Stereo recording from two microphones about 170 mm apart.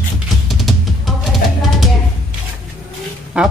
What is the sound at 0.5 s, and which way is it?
Music, centre (ahead or behind).